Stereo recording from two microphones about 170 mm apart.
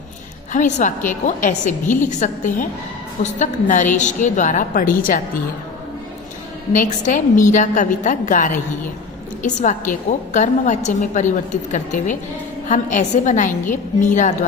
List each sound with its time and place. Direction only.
0.5 s a woman's voice: 45° left (ahead or behind)
6.7 s a woman's voice: 50° left (ahead or behind)